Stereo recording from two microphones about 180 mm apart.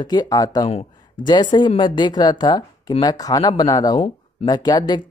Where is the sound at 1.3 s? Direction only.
25° left (ahead or behind).